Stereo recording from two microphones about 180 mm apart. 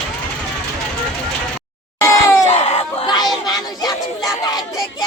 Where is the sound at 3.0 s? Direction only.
20° left (ahead or behind).